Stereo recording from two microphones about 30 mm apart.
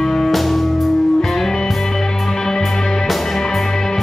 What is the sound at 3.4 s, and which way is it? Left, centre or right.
Music, centre.